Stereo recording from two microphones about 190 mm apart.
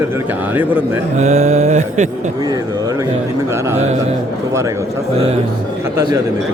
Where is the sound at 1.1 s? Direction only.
35° right (ahead or behind).